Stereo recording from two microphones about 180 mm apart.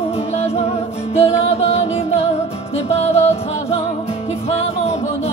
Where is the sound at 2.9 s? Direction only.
35° left (ahead or behind).